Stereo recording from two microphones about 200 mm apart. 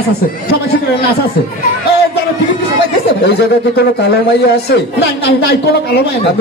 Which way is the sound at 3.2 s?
55° left (ahead or behind).